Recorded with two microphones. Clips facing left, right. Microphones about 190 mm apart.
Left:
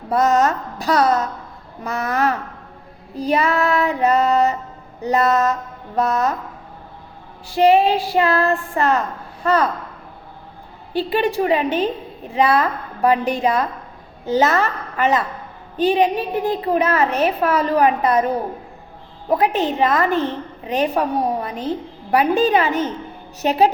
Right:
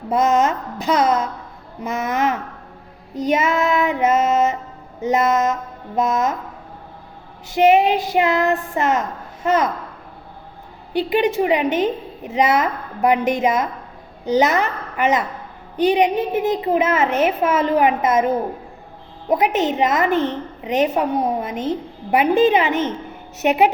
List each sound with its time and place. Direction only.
0.1 s a woman's voice: 20° right (ahead or behind)
7.4 s a woman's voice: 20° right (ahead or behind)
10.9 s a woman's voice: 20° right (ahead or behind)